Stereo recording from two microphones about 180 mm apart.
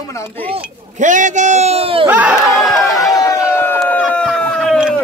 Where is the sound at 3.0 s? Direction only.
15° left (ahead or behind); by 4.9 s centre (ahead or behind).